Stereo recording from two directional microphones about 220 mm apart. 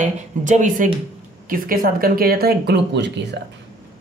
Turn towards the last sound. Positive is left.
turn(degrees=-50)  # may be behind; listen again after turning